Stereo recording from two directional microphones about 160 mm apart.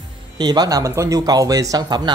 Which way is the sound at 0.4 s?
25° right (ahead or behind).